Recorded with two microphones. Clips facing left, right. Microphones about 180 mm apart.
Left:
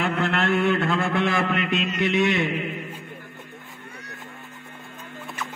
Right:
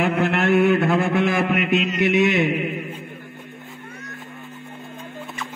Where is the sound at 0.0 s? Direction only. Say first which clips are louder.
Right 4 dB; 15° right (ahead or behind).